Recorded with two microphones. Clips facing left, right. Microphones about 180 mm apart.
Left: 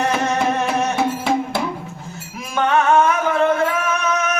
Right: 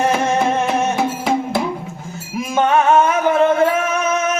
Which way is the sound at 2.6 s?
20° right (ahead or behind).